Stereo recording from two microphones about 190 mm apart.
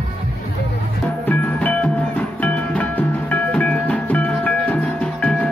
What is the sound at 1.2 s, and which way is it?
Music, 10° left (ahead or behind).